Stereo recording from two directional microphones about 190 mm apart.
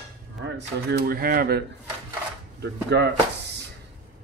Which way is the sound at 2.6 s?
60° right (ahead or behind).